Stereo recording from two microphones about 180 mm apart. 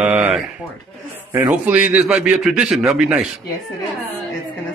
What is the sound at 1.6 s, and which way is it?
Speech, 10° right (ahead or behind).